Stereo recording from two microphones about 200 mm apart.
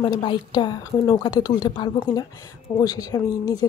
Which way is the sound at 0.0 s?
25° left (ahead or behind).